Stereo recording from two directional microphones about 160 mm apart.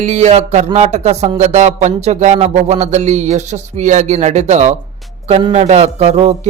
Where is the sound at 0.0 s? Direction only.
45° right (ahead or behind).